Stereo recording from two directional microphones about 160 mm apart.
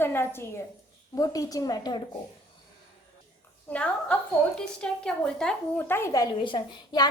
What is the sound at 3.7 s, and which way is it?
A woman's voice, 10° left (ahead or behind).